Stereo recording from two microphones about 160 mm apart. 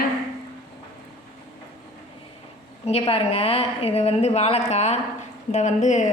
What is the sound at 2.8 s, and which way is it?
A woman's voice, 40° left (ahead or behind).